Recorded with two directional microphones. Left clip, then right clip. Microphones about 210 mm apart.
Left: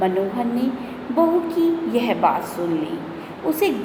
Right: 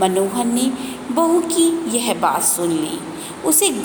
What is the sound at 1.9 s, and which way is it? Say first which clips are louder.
Speech: left 3 dB; 35° right (ahead or behind).